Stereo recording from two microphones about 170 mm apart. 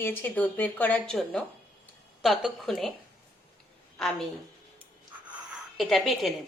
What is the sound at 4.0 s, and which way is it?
Speech, 5° left (ahead or behind).